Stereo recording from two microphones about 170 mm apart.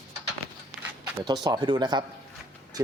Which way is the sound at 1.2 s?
25° right (ahead or behind).